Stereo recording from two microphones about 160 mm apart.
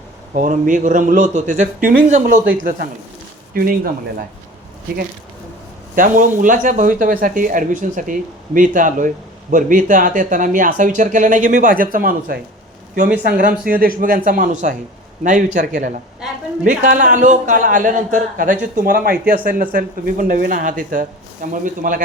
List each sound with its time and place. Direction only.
0.3 s a man's voice: 55° right (ahead or behind)
5.9 s a man's voice: 55° right (ahead or behind)